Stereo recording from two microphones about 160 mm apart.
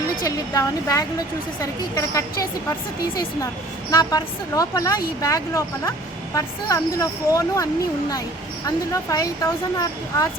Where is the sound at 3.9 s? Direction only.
25° left (ahead or behind).